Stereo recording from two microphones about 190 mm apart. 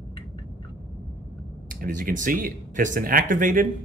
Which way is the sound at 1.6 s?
45° right (ahead or behind).